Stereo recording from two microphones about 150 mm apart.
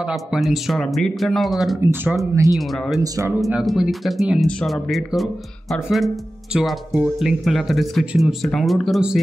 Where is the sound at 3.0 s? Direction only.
25° right (ahead or behind).